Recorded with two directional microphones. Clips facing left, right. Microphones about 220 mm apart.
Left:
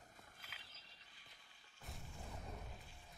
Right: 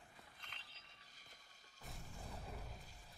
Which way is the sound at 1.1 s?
45° right (ahead or behind).